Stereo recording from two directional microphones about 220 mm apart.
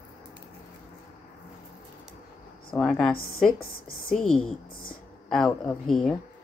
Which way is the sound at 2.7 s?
5° left (ahead or behind).